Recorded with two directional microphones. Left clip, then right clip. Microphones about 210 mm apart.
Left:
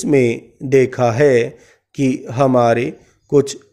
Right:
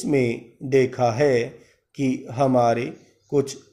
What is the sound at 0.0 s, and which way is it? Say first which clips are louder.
Speech: left 7 dB; 50° left (ahead or behind).